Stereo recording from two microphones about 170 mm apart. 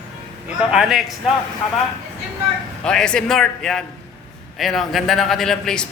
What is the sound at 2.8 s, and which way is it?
A man's voice, 5° left (ahead or behind).